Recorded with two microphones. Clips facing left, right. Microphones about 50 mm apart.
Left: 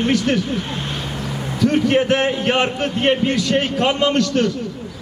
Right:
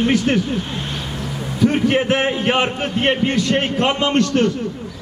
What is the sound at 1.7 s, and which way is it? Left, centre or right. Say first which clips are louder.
A man's voice: left 1 dB; right.